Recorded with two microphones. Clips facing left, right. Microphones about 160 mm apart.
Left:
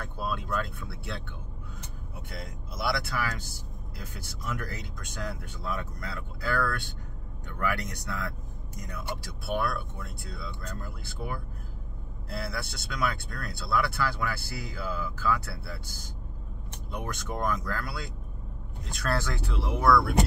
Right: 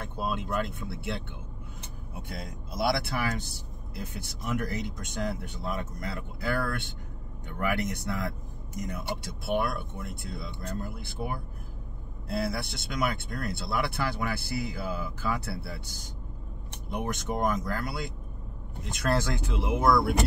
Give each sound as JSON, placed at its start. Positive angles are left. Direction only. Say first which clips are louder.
{"t": 0.0, "sound": "speech", "louder": "right 2 dB", "side_deg": -20}
{"t": 3.1, "sound": "speech", "louder": "right 2 dB", "side_deg": -25}
{"t": 16.9, "sound": "speech", "louder": "right 4 dB", "side_deg": -20}